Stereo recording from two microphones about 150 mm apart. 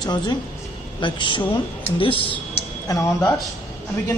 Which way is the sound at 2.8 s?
20° left (ahead or behind).